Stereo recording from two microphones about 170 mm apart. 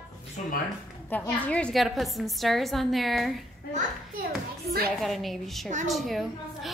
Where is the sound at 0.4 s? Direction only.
45° left (ahead or behind).